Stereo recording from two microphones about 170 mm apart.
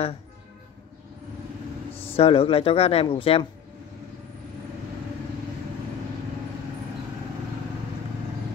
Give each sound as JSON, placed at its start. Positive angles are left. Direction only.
{"t": 2.1, "sound": "speech", "side_deg": 35}